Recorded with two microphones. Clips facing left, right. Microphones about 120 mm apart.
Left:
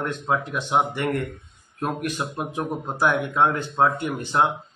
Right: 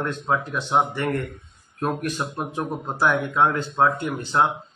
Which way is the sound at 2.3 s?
10° left (ahead or behind).